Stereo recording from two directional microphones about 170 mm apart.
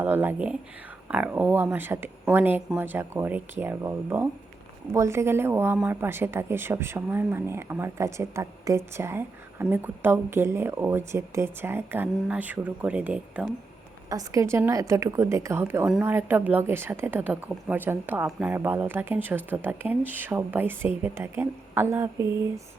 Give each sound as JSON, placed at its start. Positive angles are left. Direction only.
{"t": 0.0, "sound": "speech", "side_deg": -10}
{"t": 14.1, "sound": "speech", "side_deg": -20}